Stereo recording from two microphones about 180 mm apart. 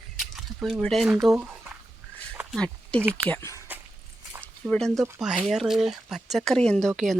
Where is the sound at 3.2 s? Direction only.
10° left (ahead or behind).